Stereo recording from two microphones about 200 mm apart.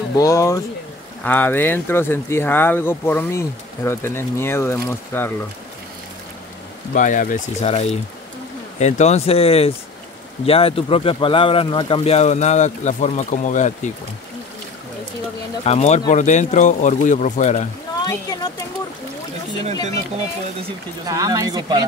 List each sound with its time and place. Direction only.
0.1 s speech: 15° left (ahead or behind)
6.9 s speech: 40° left (ahead or behind)
15.6 s speech: 35° left (ahead or behind)
18.0 s speech: 20° left (ahead or behind)
21.1 s speech: 15° right (ahead or behind)